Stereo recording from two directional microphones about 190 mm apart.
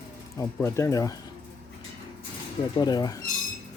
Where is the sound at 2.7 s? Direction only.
20° left (ahead or behind).